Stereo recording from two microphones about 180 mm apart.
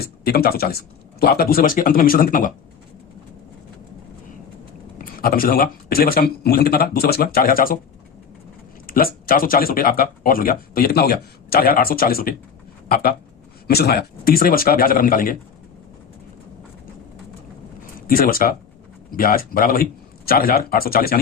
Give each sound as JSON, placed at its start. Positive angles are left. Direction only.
{"t": 0.0, "sound": "speech", "side_deg": 60}
{"t": 4.9, "sound": "speech", "side_deg": 55}
{"t": 8.9, "sound": "speech", "side_deg": 55}
{"t": 18.1, "sound": "speech", "side_deg": 55}